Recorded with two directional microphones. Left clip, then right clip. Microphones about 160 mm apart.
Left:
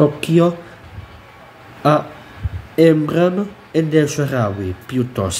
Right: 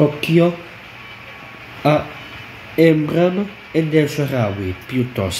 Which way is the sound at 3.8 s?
35° left (ahead or behind).